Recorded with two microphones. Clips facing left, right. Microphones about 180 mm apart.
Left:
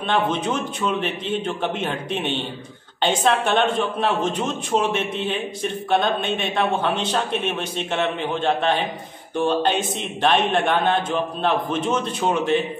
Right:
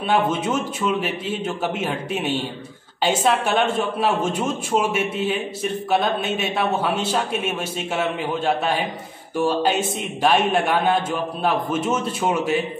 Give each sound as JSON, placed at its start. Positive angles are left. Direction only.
{"t": 0.1, "sound": "speech", "side_deg": -10}